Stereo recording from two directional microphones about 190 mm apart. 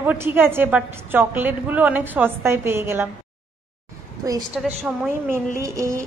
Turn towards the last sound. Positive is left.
turn(degrees=-15)  # may be behind; listen again after turning